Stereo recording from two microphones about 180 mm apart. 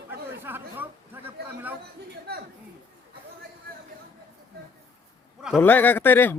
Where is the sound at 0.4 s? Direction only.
10° right (ahead or behind).